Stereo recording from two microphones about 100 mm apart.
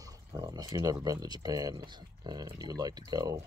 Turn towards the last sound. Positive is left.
turn(degrees=-40)  # may be behind; listen again after turning